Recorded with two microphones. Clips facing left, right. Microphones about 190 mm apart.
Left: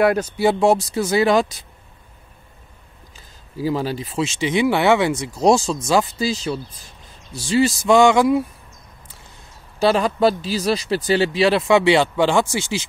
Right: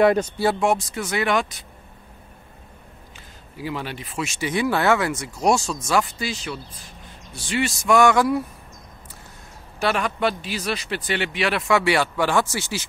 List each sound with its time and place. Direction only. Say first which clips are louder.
0.0 s speech: left 1 dB; 5° left (ahead or behind)
0.6 s speech: left 5 dB; 35° left (ahead or behind)
3.5 s speech: left 8 dB; 35° left (ahead or behind); by 5.1 s 20° left (ahead or behind)
5.1 s speech: left 5 dB; 30° left (ahead or behind)
9.8 s speech: left 6 dB; 30° left (ahead or behind); by 12.8 s 15° left (ahead or behind)